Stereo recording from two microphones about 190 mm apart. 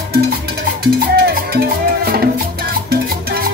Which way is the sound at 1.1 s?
55° right (ahead or behind).